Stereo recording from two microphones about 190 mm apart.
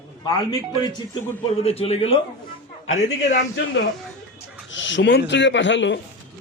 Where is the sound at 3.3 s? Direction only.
65° left (ahead or behind).